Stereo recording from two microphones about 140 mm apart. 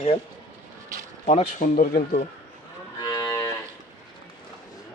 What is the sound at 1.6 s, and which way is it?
Speech, 75° left (ahead or behind).